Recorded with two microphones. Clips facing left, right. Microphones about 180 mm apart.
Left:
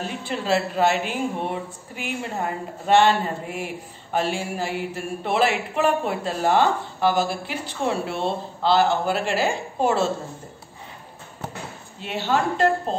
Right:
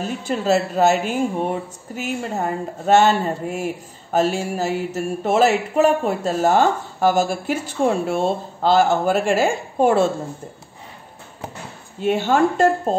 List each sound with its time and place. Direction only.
0.2 s mantra: 45° right (ahead or behind)
12.0 s mantra: 50° right (ahead or behind)